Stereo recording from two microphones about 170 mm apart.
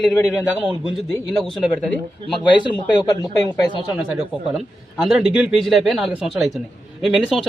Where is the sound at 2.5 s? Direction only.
25° left (ahead or behind).